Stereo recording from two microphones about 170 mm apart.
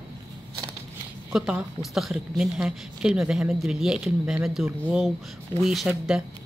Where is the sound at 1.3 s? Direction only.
5° right (ahead or behind).